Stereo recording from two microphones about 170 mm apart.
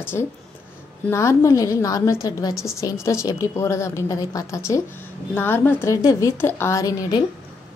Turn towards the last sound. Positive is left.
turn(degrees=25)  # may be behind; listen again after turning